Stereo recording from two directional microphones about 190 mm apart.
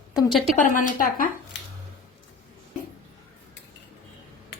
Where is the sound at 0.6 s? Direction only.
45° left (ahead or behind).